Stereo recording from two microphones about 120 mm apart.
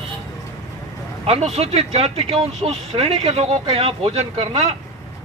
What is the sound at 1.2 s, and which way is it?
Speech, 55° right (ahead or behind).